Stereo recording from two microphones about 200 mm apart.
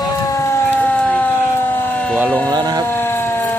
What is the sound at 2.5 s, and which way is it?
Speech, 20° right (ahead or behind).